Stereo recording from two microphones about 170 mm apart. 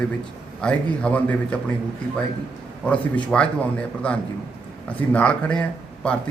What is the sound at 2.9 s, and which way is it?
A man's voice, 5° left (ahead or behind).